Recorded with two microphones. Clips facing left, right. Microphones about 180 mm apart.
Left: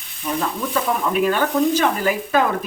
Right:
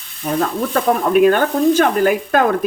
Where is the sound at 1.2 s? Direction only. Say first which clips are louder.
Right 4 dB; 55° right (ahead or behind).